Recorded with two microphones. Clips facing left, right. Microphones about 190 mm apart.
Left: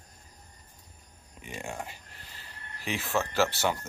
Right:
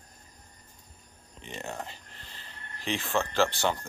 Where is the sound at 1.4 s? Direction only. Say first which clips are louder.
Even; 10° left (ahead or behind).